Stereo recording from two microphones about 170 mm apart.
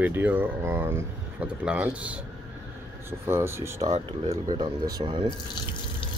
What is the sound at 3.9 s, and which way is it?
Speech, 40° right (ahead or behind).